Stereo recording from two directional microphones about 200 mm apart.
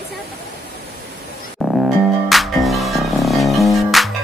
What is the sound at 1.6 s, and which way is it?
Music, centre (ahead or behind).